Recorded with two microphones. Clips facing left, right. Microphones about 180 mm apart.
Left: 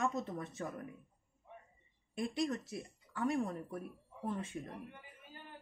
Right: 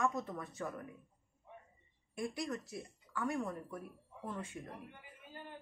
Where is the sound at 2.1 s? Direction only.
25° left (ahead or behind).